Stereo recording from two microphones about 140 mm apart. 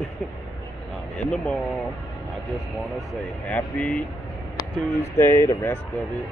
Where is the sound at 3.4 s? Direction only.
10° left (ahead or behind).